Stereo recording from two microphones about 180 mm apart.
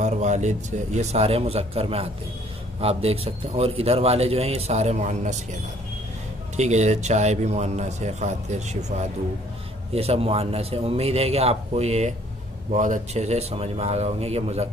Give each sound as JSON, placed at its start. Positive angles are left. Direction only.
{"t": 0.0, "sound": "a man's voice", "side_deg": -40}